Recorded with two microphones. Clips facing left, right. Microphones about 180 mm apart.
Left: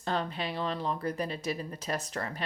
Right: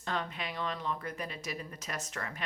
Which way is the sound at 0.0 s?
35° left (ahead or behind).